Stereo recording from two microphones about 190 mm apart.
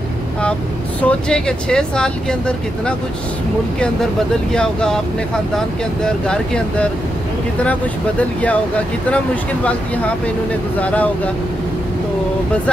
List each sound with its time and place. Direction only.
1.0 s speech: 5° left (ahead or behind)
4.5 s speech: 5° left (ahead or behind)
8.2 s speech: 5° left (ahead or behind)